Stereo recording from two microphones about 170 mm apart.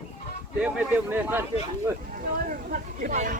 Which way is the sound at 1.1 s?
10° right (ahead or behind).